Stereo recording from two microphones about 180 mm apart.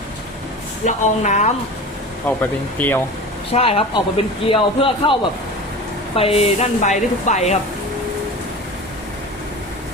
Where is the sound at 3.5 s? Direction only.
35° left (ahead or behind).